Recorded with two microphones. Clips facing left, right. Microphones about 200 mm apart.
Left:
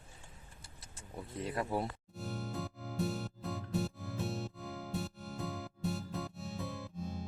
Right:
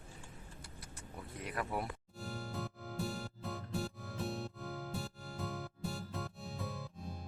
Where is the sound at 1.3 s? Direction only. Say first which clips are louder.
Left 4 dB; 25° left (ahead or behind).